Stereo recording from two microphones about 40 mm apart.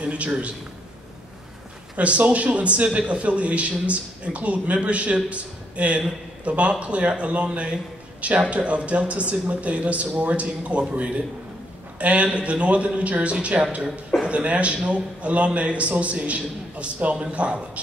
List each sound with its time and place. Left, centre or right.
0.0 s a man's voice: right
2.0 s a man's voice: right